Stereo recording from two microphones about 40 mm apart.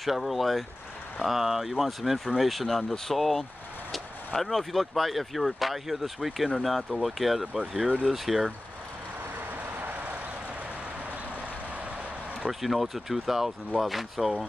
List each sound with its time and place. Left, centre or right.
0.0 s speech: centre
7.5 s speech: centre
9.8 s vehicle: right
12.4 s speech: centre